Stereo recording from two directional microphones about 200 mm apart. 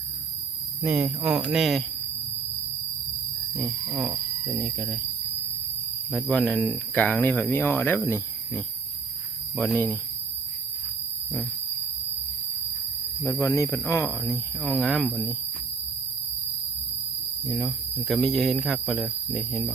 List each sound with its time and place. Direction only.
0.8 s speech: 10° right (ahead or behind)
3.6 s speech: centre (ahead or behind)
6.1 s speech: 5° left (ahead or behind)
13.2 s speech: 15° left (ahead or behind)
17.4 s speech: centre (ahead or behind)